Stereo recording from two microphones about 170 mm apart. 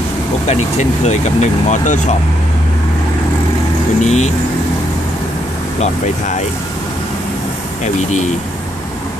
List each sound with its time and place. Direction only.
0.5 s speech: 40° left (ahead or behind)
4.0 s speech: 40° left (ahead or behind)
7.8 s speech: 45° left (ahead or behind)